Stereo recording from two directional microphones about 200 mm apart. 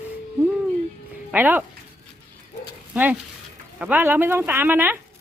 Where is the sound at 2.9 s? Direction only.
10° right (ahead or behind).